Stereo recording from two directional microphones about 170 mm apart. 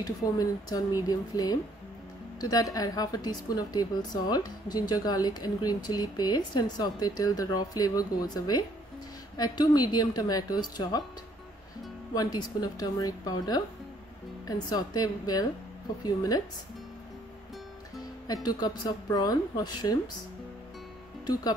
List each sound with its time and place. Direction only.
0.0 s a woman's voice: 20° left (ahead or behind)
12.1 s a woman's voice: 25° left (ahead or behind)
18.2 s a woman's voice: 25° left (ahead or behind)